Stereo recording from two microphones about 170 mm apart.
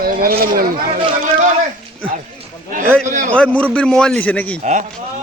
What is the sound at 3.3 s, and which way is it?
A man's voice, 5° left (ahead or behind).